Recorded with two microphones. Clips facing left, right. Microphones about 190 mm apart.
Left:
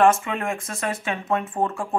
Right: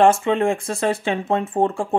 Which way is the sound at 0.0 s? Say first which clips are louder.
Right 4 dB; 30° right (ahead or behind).